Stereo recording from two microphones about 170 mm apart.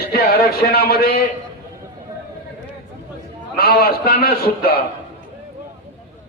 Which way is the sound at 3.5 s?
65° left (ahead or behind).